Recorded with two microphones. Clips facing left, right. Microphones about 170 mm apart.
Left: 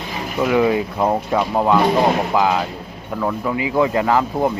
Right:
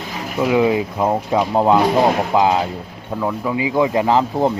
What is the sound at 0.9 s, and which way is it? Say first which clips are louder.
Speech: even; 5° right (ahead or behind).